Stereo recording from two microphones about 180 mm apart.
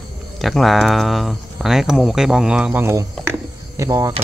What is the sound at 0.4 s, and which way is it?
Speech, centre (ahead or behind).